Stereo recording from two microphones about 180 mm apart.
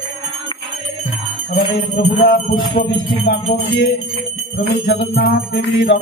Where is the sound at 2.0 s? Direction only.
60° left (ahead or behind).